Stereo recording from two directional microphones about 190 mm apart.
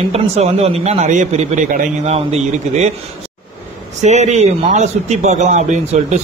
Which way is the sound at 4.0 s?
35° right (ahead or behind).